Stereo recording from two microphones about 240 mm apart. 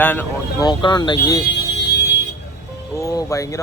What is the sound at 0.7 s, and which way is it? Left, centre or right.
Speech, centre.